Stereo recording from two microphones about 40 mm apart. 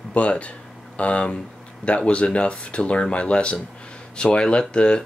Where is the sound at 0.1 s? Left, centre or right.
Left.